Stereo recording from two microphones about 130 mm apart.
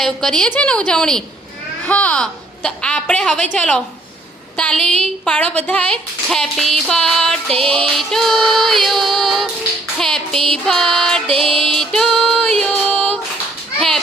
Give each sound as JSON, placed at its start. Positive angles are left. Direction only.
{"t": 0.0, "sound": "music", "side_deg": 5}
{"t": 1.9, "sound": "a woman's voice", "side_deg": 10}
{"t": 7.9, "sound": "music", "side_deg": 0}
{"t": 11.4, "sound": "music", "side_deg": -45}
{"t": 11.7, "sound": "music", "side_deg": 5}
{"t": 13.7, "sound": "children playing", "side_deg": 5}